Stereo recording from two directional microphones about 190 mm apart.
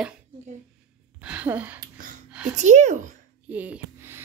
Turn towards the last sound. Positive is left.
turn(degrees=-10)  # may be behind; listen again after turning